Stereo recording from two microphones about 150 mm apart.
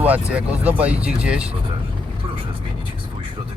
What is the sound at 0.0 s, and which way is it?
Speech, 10° right (ahead or behind).